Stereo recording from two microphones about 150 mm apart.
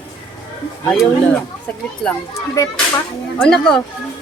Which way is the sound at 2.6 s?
20° left (ahead or behind).